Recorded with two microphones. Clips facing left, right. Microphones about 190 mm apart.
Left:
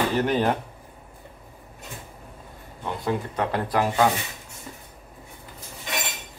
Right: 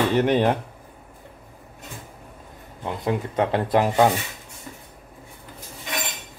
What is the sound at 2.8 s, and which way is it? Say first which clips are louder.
Speech: right 2 dB; 20° right (ahead or behind).